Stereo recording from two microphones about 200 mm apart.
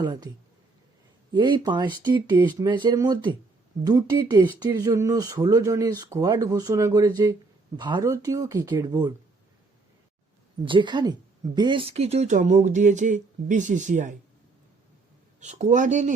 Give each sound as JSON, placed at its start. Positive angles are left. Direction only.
{"t": 0.0, "sound": "speech", "side_deg": -20}
{"t": 10.7, "sound": "speech", "side_deg": -25}
{"t": 15.4, "sound": "speech", "side_deg": -35}